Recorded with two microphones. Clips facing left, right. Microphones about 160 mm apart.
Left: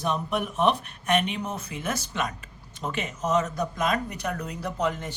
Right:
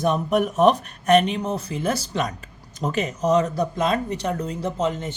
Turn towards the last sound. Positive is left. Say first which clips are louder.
# right 4 dB
turn(degrees=-25)  # may be behind; listen again after turning